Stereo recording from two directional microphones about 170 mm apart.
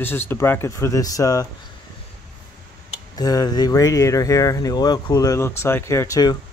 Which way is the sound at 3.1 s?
20° left (ahead or behind).